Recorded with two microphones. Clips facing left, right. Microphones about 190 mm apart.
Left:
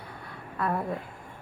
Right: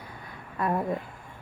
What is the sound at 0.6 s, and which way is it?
Speech, 15° right (ahead or behind).